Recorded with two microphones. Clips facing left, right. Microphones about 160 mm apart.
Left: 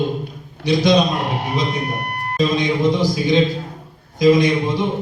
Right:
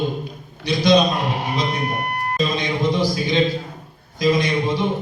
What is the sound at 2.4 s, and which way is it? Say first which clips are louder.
A man's voice: left 5 dB; 20° left (ahead or behind).